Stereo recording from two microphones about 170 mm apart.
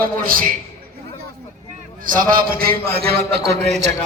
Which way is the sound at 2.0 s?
55° right (ahead or behind).